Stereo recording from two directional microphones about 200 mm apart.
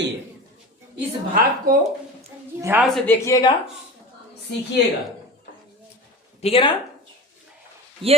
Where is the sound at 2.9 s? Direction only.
10° left (ahead or behind).